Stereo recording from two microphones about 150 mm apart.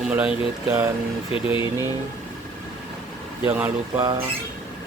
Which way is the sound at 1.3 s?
35° left (ahead or behind).